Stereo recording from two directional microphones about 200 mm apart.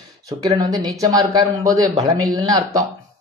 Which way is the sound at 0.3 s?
20° right (ahead or behind).